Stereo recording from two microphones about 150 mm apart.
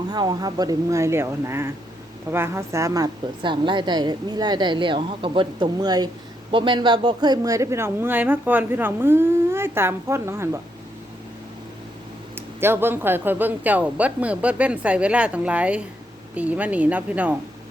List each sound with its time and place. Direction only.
0.1 s a woman's voice: 25° right (ahead or behind)
12.5 s speech: 15° right (ahead or behind)